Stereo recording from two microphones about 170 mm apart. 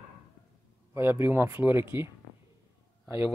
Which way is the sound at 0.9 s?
15° right (ahead or behind).